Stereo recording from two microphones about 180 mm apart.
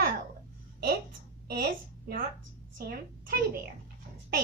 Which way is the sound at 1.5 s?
55° right (ahead or behind).